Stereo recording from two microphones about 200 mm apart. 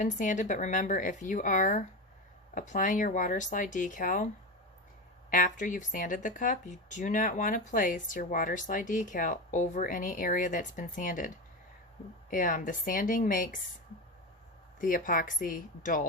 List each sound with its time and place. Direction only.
0.0 s speech: 40° left (ahead or behind)
5.3 s speech: 40° left (ahead or behind)
12.3 s speech: 40° left (ahead or behind)
14.8 s speech: 45° left (ahead or behind)